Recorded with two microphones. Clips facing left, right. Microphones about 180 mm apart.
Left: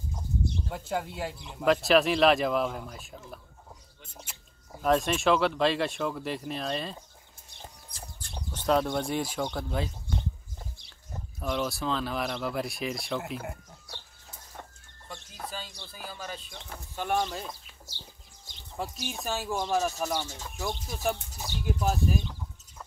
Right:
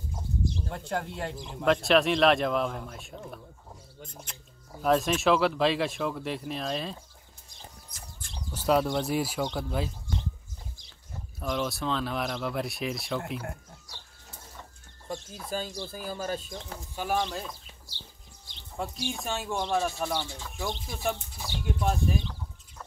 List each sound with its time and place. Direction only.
0.7 s speech: 5° left (ahead or behind)
8.5 s speech: 5° right (ahead or behind)
11.3 s speech: centre (ahead or behind)
15.0 s a sound: 45° right (ahead or behind)
15.5 s speech: 45° right (ahead or behind)
16.9 s speech: 5° right (ahead or behind)
19.0 s speech: centre (ahead or behind)